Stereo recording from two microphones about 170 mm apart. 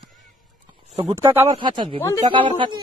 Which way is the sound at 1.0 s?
25° right (ahead or behind).